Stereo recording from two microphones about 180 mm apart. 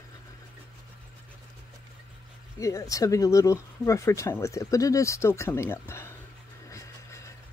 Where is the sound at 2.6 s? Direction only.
15° left (ahead or behind).